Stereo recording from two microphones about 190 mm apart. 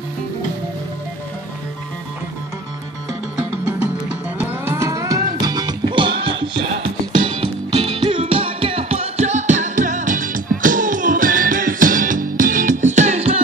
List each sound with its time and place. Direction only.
3.3 s music: 5° right (ahead or behind); by 6.1 s 25° right (ahead or behind)
7.2 s music: 25° right (ahead or behind)